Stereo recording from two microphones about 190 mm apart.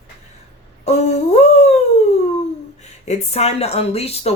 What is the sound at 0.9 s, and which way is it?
Humming, 35° left (ahead or behind).